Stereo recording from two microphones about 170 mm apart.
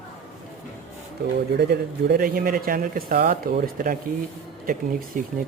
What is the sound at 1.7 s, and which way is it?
Speech, 60° right (ahead or behind).